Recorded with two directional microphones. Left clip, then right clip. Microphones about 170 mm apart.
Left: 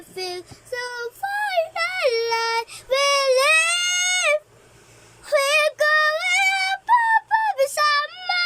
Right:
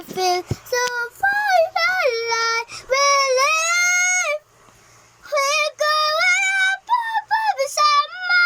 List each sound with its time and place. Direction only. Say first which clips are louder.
0.2 s child singing: right 11 dB; centre (ahead or behind)
1.5 s a sound: right 5 dB; 20° left (ahead or behind)
2.1 s child singing: right 1 dB; centre (ahead or behind)
2.6 s child singing: right 3 dB; 25° left (ahead or behind)
3.8 s music: right 4 dB; centre (ahead or behind)
5.2 s child singing: left 1 dB; 25° left (ahead or behind)
5.9 s female singing: right 1 dB; 20° left (ahead or behind)
6.9 s a sound: left 2 dB; 25° left (ahead or behind)
7.6 s child singing: right 2 dB; 25° left (ahead or behind)